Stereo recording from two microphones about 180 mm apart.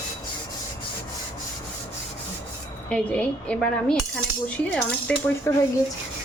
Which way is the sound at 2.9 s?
5° left (ahead or behind).